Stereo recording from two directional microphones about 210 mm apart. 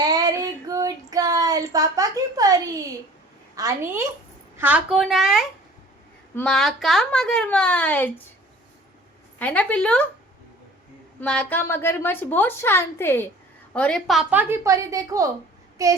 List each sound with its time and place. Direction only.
0.0 s child singing: 20° right (ahead or behind)
3.5 s a woman's voice: 15° right (ahead or behind); by 8.1 s 5° left (ahead or behind)
9.4 s a woman's voice: 5° left (ahead or behind)
11.2 s a woman's voice: 5° left (ahead or behind); by 15.9 s 15° right (ahead or behind)